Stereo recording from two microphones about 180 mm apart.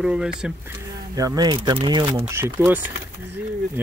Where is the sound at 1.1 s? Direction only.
20° right (ahead or behind).